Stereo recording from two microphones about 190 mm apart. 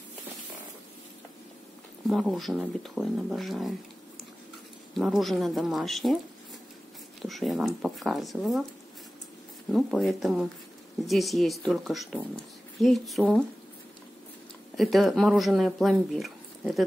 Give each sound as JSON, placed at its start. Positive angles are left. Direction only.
{"t": 2.0, "sound": "speech", "side_deg": 0}
{"t": 4.9, "sound": "speech", "side_deg": 0}
{"t": 7.2, "sound": "speech", "side_deg": 0}
{"t": 9.7, "sound": "speech", "side_deg": 0}
{"t": 14.8, "sound": "speech", "side_deg": 0}